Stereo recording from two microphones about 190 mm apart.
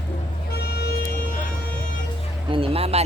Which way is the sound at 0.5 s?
55° left (ahead or behind).